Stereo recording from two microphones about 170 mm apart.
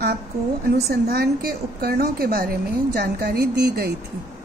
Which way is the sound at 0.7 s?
70° right (ahead or behind).